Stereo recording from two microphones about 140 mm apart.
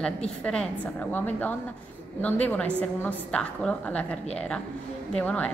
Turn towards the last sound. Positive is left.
turn(degrees=10)  # may be behind; listen again after turning